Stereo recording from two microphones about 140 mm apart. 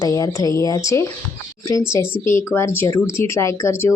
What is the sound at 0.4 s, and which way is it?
Speech, 25° left (ahead or behind).